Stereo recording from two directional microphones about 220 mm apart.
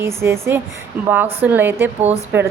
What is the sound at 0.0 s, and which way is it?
A woman's voice, 10° right (ahead or behind).